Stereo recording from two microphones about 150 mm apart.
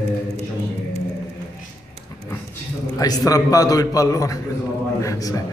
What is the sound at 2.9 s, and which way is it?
A man's voice, 25° left (ahead or behind).